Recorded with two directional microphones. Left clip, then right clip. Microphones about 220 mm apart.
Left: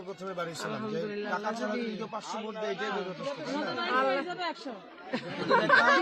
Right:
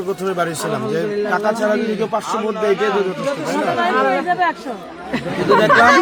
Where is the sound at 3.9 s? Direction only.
40° left (ahead or behind).